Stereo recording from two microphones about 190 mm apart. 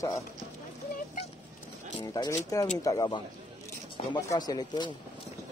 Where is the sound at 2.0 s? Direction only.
20° left (ahead or behind).